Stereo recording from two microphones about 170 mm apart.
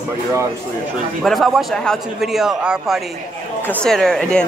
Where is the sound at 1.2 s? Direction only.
Centre (ahead or behind).